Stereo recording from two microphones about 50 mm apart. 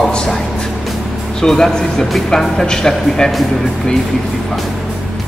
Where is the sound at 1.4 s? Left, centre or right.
Centre.